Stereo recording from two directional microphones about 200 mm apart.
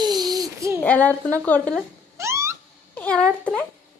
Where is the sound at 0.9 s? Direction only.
10° left (ahead or behind).